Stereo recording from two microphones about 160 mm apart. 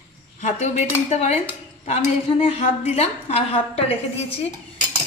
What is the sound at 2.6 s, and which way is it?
A woman's voice, 40° left (ahead or behind).